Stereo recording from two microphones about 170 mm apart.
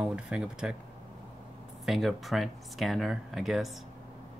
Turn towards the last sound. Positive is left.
turn(degrees=0)  # may be behind; listen again after turning